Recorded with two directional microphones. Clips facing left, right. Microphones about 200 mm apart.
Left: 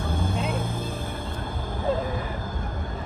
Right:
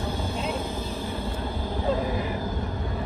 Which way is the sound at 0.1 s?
50° left (ahead or behind).